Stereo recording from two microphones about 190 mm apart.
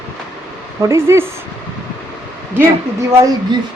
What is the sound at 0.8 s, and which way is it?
Speech, 15° right (ahead or behind).